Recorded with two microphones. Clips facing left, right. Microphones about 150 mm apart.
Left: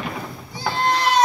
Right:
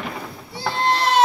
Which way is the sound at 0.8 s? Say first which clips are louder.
Even; 25° right (ahead or behind).